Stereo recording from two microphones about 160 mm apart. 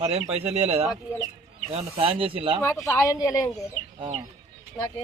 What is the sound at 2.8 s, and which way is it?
Speech, 20° left (ahead or behind).